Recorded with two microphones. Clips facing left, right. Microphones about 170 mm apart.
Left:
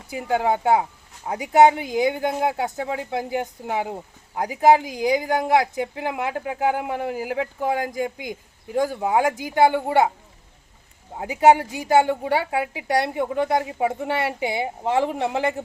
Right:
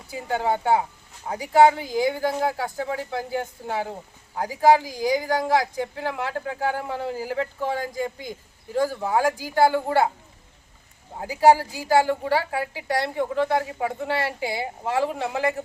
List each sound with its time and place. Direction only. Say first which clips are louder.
0.1 s a woman's voice: left 3 dB; 15° left (ahead or behind)
11.2 s a woman's voice: left 1 dB; 20° left (ahead or behind)